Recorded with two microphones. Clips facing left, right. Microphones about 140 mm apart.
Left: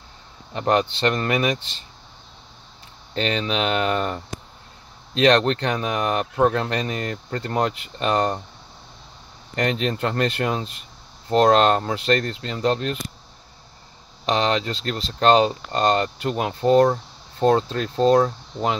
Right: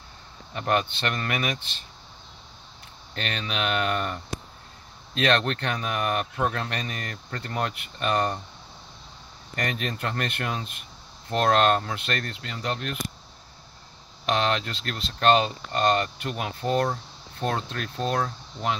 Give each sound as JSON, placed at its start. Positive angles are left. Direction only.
{"t": 0.6, "sound": "speech", "side_deg": 30}
{"t": 3.2, "sound": "speech", "side_deg": 30}
{"t": 9.6, "sound": "speech", "side_deg": 25}
{"t": 14.3, "sound": "speech", "side_deg": 25}